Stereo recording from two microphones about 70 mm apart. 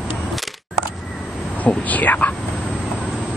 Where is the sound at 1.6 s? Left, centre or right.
Left.